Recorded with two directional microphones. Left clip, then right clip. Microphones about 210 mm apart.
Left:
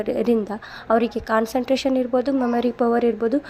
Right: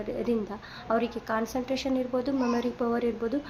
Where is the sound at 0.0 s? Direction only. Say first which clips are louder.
Left 9 dB; 40° left (ahead or behind).